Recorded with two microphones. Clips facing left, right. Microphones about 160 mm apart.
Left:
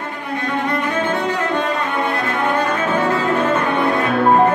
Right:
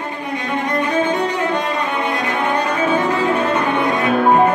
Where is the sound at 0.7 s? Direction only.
15° right (ahead or behind).